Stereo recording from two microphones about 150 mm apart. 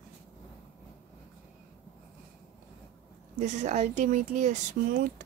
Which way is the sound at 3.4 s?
50° right (ahead or behind).